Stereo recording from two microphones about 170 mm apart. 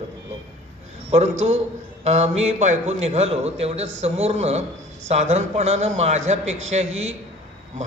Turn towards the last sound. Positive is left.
turn(degrees=-40)  # may be behind; listen again after turning